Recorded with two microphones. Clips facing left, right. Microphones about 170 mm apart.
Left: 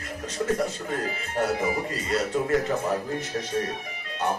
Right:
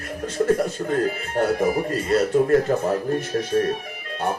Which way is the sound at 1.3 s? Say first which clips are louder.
Right 4 dB; 55° right (ahead or behind).